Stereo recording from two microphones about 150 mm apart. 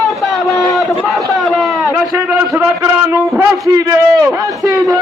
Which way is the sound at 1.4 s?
Centre (ahead or behind).